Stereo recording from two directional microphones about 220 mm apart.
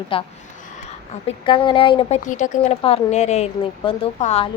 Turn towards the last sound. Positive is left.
turn(degrees=30)  # may be behind; listen again after turning